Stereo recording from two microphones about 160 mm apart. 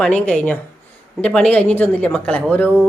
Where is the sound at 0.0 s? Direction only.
5° left (ahead or behind).